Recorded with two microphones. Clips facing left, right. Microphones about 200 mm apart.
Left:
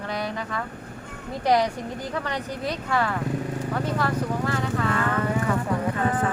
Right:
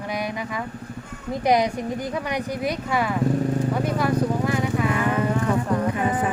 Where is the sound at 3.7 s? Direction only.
15° right (ahead or behind).